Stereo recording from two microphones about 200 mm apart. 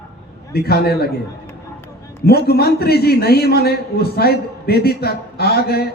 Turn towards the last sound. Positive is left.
turn(degrees=50)  # may be behind; listen again after turning